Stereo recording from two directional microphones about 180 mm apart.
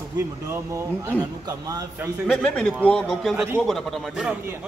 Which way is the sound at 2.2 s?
5° left (ahead or behind).